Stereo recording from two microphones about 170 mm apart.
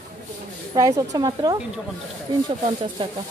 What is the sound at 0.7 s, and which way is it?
Speech, 20° right (ahead or behind).